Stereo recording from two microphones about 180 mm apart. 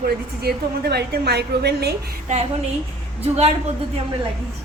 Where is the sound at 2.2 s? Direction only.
35° right (ahead or behind).